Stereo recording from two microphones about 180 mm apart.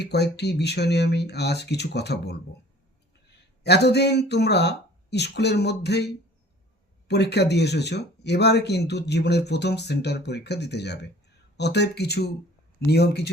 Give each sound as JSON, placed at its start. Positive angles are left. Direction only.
{"t": 0.0, "sound": "speech", "side_deg": 65}
{"t": 3.6, "sound": "speech", "side_deg": 70}
{"t": 7.1, "sound": "speech", "side_deg": 70}